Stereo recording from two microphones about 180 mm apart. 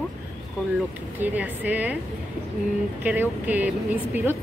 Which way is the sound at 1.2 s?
10° right (ahead or behind).